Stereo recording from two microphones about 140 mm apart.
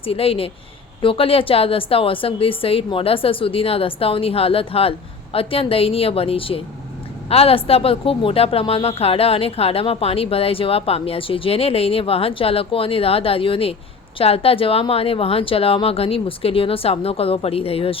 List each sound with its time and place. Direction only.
0.0 s a woman's voice: 45° left (ahead or behind)